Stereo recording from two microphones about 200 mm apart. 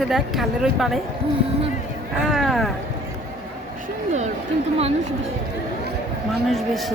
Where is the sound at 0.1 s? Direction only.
Centre (ahead or behind).